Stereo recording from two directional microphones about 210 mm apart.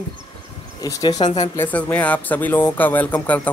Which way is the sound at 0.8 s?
15° left (ahead or behind).